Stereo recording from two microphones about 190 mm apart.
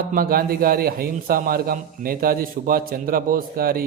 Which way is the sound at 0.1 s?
50° right (ahead or behind).